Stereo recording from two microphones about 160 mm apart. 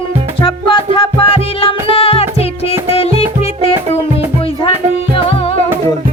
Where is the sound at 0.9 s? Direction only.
35° left (ahead or behind).